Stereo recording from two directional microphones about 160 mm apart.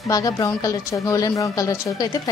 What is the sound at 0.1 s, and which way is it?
Speech, 20° left (ahead or behind).